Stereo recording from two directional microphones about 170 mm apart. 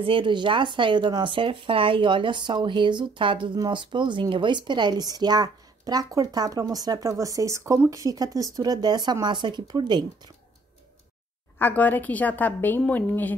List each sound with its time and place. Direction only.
0.0 s speech: 30° right (ahead or behind)
11.5 s a woman's voice: 10° left (ahead or behind)